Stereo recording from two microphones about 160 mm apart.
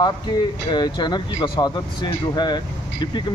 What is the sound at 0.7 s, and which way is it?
Speech, 30° left (ahead or behind).